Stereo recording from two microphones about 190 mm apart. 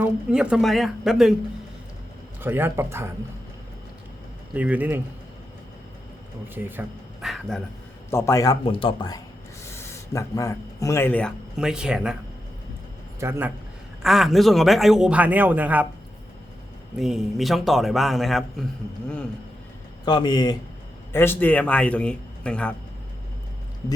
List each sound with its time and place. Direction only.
0.0 s a man's voice: 5° right (ahead or behind)
2.4 s speech: 10° right (ahead or behind)
4.5 s speech: 10° right (ahead or behind)
6.5 s speech: 10° right (ahead or behind)
8.1 s speech: 15° left (ahead or behind)
8.6 s speech: 30° left (ahead or behind); by 12.1 s 5° right (ahead or behind)
13.1 s a man's voice: 15° right (ahead or behind)
14.0 s a man's voice: centre (ahead or behind)
17.0 s a man's voice: centre (ahead or behind)
20.1 s speech: 20° left (ahead or behind)
21.1 s speech: 10° left (ahead or behind)